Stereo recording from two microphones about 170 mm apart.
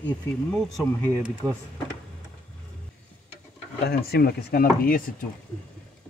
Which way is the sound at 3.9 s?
70° left (ahead or behind).